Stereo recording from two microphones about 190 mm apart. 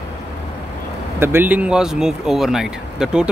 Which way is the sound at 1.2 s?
10° right (ahead or behind).